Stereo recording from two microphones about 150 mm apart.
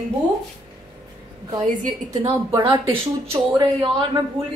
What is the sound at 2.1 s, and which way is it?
Speech, 40° right (ahead or behind).